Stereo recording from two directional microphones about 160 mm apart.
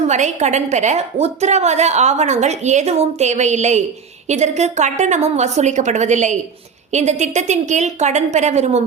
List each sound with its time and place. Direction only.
0.1 s a woman's voice: 45° right (ahead or behind)